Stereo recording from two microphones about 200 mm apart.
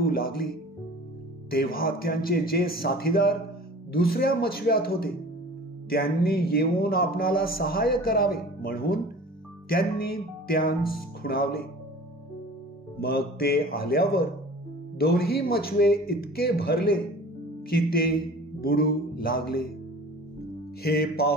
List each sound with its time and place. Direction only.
0.0 s speech: 50° left (ahead or behind)
1.5 s a man's voice: 50° left (ahead or behind)
13.0 s a man's voice: 50° left (ahead or behind)
20.8 s a man's voice: 50° left (ahead or behind)